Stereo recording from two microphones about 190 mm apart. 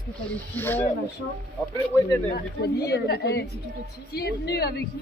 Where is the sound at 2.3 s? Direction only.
55° left (ahead or behind).